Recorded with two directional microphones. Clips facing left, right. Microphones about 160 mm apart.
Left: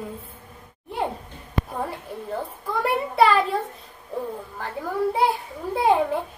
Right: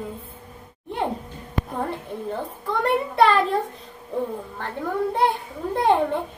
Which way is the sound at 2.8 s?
5° left (ahead or behind).